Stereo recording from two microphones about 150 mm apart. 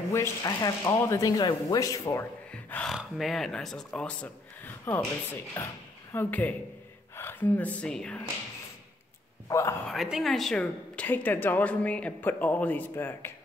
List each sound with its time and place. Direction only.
0.1 s speech: 20° left (ahead or behind)
2.5 s gasp: 5° left (ahead or behind)
3.0 s a woman's voice: centre (ahead or behind)
9.5 s speech: 20° left (ahead or behind)
9.8 s a woman's voice: centre (ahead or behind); by 13.3 s 15° left (ahead or behind)